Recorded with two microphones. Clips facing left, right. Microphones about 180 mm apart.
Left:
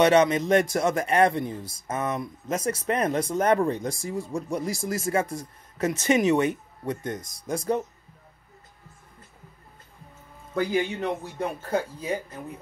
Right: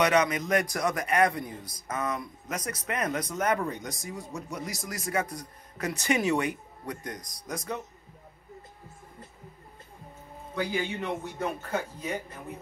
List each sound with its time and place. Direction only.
0.0 s a man's voice: 30° left (ahead or behind)
10.5 s speech: 40° left (ahead or behind)